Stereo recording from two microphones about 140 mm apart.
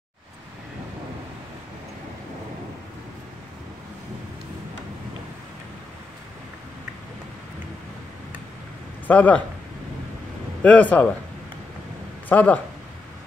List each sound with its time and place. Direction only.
9.0 s speech: 10° left (ahead or behind)
10.6 s speech: 10° left (ahead or behind)
12.3 s speech: 10° left (ahead or behind)